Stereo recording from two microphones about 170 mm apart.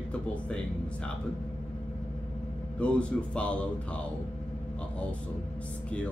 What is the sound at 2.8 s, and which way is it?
Speech, 5° left (ahead or behind).